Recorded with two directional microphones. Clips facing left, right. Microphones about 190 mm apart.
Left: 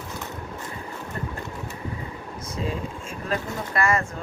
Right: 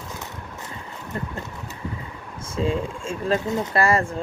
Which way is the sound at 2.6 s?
30° right (ahead or behind).